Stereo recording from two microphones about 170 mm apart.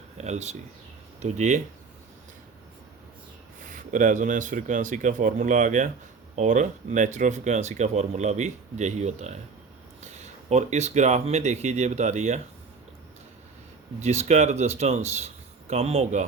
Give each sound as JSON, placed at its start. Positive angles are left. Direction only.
{"t": 0.2, "sound": "speech", "side_deg": -40}
{"t": 3.7, "sound": "speech", "side_deg": -50}
{"t": 14.0, "sound": "speech", "side_deg": -40}